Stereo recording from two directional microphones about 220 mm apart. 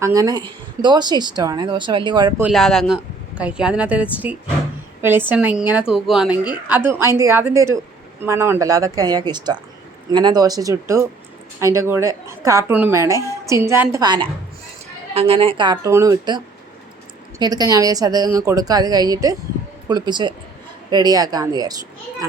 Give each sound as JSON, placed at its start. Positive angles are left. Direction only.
{"t": 0.0, "sound": "a woman's voice", "side_deg": -15}
{"t": 2.4, "sound": "a woman's voice", "side_deg": 0}
{"t": 17.4, "sound": "a woman's voice", "side_deg": -15}